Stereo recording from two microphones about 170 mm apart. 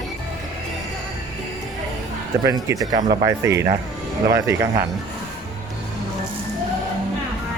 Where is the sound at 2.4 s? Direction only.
20° right (ahead or behind).